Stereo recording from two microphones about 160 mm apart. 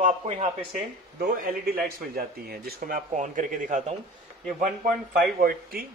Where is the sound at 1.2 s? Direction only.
65° right (ahead or behind).